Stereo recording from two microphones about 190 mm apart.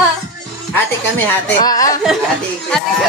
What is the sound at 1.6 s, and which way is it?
Speech, 20° left (ahead or behind).